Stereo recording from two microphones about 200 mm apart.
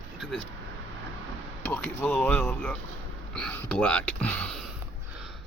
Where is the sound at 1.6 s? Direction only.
10° left (ahead or behind).